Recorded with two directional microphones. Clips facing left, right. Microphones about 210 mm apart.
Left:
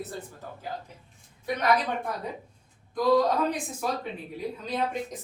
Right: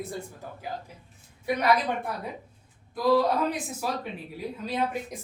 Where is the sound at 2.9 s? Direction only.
5° right (ahead or behind).